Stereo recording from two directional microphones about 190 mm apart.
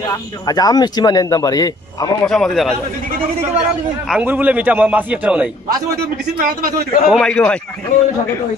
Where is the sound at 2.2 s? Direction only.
Centre (ahead or behind).